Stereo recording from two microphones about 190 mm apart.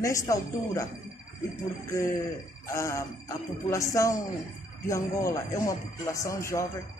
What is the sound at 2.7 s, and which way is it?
Speech, 15° left (ahead or behind).